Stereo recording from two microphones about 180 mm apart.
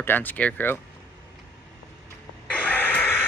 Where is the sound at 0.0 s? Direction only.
10° left (ahead or behind).